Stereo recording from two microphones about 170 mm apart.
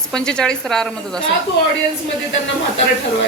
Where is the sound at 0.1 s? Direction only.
5° left (ahead or behind).